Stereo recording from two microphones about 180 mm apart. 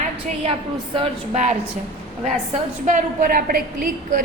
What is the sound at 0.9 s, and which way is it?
Speech, 40° right (ahead or behind).